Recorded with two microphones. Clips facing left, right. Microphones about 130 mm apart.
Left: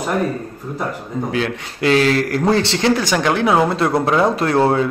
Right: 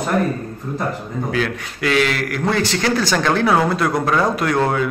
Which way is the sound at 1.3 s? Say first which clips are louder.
Right 2 dB; 25° left (ahead or behind).